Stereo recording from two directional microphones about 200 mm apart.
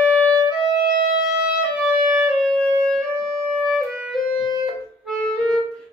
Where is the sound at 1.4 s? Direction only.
5° right (ahead or behind).